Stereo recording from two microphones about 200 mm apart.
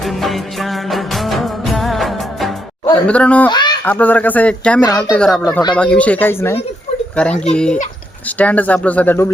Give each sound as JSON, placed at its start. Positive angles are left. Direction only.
{"t": 0.0, "sound": "music", "side_deg": 0}
{"t": 2.8, "sound": "speech", "side_deg": 10}
{"t": 3.5, "sound": "speech", "side_deg": 20}
{"t": 3.8, "sound": "speech", "side_deg": 10}